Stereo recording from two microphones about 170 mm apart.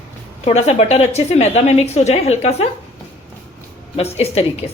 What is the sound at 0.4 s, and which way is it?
A woman's voice, 40° left (ahead or behind).